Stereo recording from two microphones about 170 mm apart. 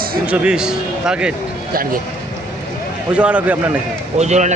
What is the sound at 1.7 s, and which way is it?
Speech, 55° right (ahead or behind).